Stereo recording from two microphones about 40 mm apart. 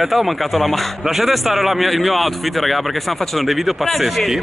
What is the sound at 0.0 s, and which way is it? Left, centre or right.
A man's voice, centre.